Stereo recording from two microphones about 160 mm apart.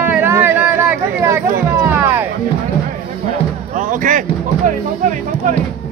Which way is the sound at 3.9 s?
55° right (ahead or behind).